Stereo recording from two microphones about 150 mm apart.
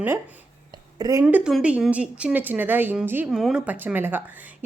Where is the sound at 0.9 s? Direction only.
25° right (ahead or behind).